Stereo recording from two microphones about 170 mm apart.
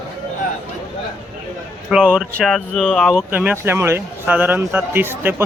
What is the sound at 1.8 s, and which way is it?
A man's voice, 5° right (ahead or behind).